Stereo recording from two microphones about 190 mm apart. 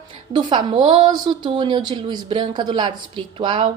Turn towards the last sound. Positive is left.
turn(degrees=-25)  # may be behind; listen again after turning